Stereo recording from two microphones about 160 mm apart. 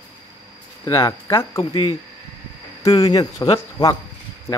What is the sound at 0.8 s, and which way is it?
Speech, 20° left (ahead or behind).